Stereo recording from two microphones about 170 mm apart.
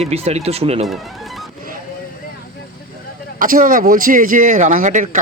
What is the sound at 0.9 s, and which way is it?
Music, centre (ahead or behind).